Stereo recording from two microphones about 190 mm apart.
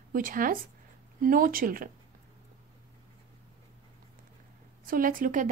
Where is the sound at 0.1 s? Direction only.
45° right (ahead or behind).